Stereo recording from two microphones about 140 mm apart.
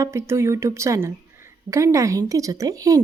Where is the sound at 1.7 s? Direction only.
20° right (ahead or behind).